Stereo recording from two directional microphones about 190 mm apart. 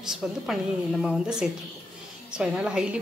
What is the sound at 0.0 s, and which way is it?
A woman's voice, centre (ahead or behind).